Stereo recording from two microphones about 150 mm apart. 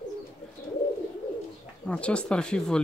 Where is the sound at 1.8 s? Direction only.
5° left (ahead or behind).